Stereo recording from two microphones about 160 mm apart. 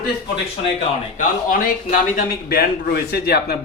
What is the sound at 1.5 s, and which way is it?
A man's voice, 60° left (ahead or behind).